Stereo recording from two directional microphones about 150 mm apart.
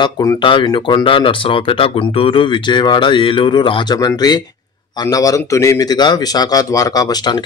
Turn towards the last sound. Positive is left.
turn(degrees=25)  # may be behind; listen again after turning